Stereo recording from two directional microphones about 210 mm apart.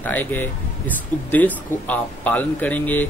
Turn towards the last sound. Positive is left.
turn(degrees=10)  # may be behind; listen again after turning